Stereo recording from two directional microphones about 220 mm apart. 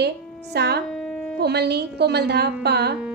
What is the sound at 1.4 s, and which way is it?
A woman's voice, 50° right (ahead or behind).